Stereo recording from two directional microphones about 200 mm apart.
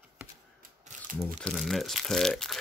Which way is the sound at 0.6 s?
40° right (ahead or behind).